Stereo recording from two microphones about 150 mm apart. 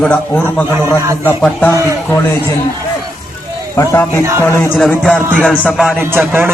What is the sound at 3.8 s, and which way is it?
Speech, 20° left (ahead or behind).